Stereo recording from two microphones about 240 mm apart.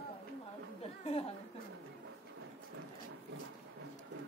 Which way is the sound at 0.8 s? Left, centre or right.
Left.